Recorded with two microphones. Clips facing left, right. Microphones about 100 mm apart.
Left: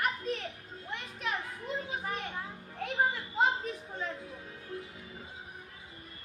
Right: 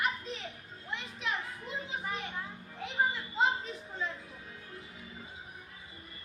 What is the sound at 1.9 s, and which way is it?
Children playing, 45° left (ahead or behind).